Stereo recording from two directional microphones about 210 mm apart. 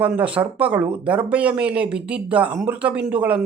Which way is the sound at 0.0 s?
5° right (ahead or behind).